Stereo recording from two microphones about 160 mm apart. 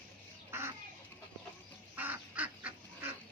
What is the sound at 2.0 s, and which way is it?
Duck, 10° right (ahead or behind).